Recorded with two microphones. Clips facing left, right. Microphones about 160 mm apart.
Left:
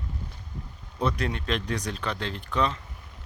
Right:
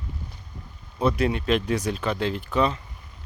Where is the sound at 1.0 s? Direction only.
5° right (ahead or behind).